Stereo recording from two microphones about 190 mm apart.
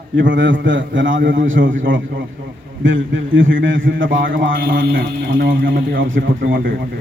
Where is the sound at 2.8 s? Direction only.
90° right.